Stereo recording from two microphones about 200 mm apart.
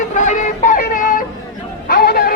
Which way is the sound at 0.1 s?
35° left (ahead or behind).